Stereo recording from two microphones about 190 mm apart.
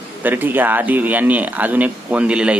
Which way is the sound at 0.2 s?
10° right (ahead or behind).